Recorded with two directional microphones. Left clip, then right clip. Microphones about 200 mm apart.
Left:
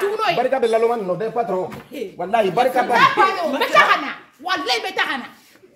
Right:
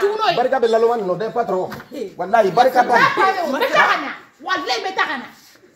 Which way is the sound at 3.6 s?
60° left (ahead or behind).